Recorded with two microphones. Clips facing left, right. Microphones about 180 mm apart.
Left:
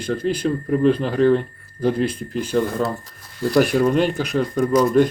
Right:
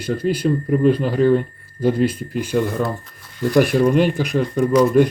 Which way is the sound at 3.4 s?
10° left (ahead or behind).